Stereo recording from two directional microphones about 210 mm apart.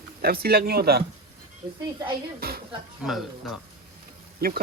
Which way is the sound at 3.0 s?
Centre (ahead or behind).